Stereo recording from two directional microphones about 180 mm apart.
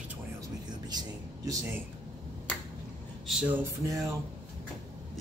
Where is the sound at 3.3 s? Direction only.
5° right (ahead or behind).